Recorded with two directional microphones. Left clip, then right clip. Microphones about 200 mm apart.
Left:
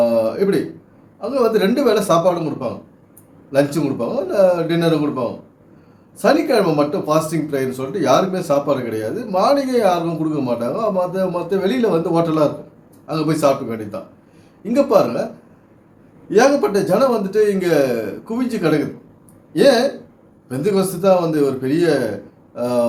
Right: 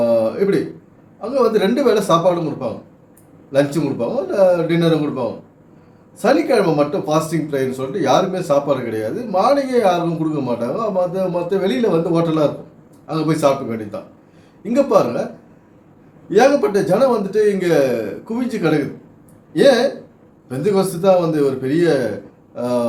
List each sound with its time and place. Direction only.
0.0 s a sound: 5° left (ahead or behind)
1.2 s speech: 5° left (ahead or behind)
16.3 s speech: 10° left (ahead or behind)